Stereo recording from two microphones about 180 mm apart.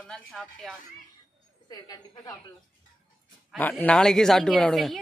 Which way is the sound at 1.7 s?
20° left (ahead or behind).